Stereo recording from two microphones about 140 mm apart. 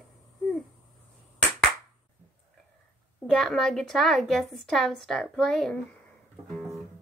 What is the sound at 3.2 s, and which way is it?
A woman's voice, 5° left (ahead or behind).